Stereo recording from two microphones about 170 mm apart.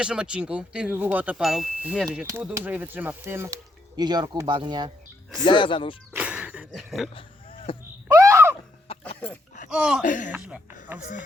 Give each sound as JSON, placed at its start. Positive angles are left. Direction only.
{"t": 0.0, "sound": "speech", "side_deg": -5}
{"t": 5.5, "sound": "speech", "side_deg": 30}
{"t": 6.1, "sound": "music", "side_deg": -5}
{"t": 6.7, "sound": "speech", "side_deg": 0}
{"t": 7.1, "sound": "a sound", "side_deg": 30}
{"t": 8.0, "sound": "a sound", "side_deg": -15}
{"t": 8.9, "sound": "a sound", "side_deg": 35}
{"t": 9.6, "sound": "speech", "side_deg": -5}
{"t": 10.0, "sound": "speech", "side_deg": 50}
{"t": 10.9, "sound": "speech", "side_deg": -10}